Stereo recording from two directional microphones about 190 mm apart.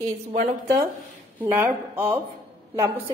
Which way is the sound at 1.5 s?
10° right (ahead or behind).